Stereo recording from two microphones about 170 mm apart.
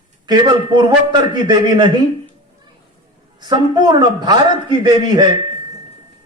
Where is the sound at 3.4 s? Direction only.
25° right (ahead or behind).